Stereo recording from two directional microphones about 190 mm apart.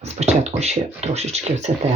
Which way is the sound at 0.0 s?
35° right (ahead or behind).